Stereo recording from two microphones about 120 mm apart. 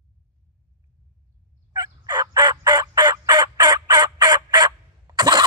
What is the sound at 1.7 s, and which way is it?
Fowl, 35° right (ahead or behind).